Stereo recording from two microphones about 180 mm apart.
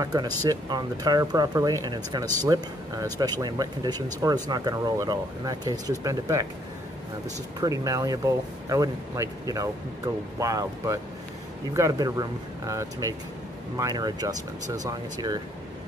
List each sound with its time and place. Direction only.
0.0 s speech: 20° right (ahead or behind)
7.6 s speech: 20° right (ahead or behind)